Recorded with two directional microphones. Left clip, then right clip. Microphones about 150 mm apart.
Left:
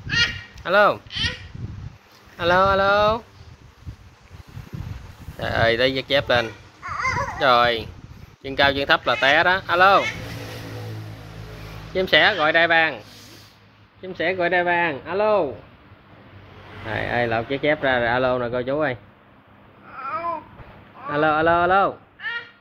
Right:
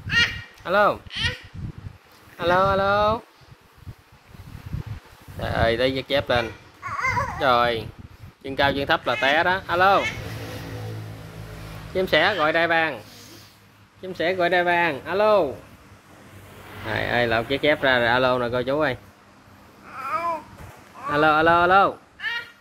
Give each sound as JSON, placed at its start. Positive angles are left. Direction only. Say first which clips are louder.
{"t": 0.7, "sound": "speech", "louder": "left 3 dB", "side_deg": 0}
{"t": 2.3, "sound": "speech", "louder": "left 2 dB", "side_deg": 0}
{"t": 5.4, "sound": "speech", "louder": "left 2 dB", "side_deg": 0}
{"t": 11.9, "sound": "speech", "louder": "left 3 dB", "side_deg": -10}
{"t": 14.0, "sound": "speech", "louder": "even", "side_deg": -10}
{"t": 16.8, "sound": "speech", "louder": "right 1 dB", "side_deg": -10}
{"t": 20.0, "sound": "babbling", "louder": "right 1 dB", "side_deg": -15}
{"t": 21.0, "sound": "speech", "louder": "right 1 dB", "side_deg": -15}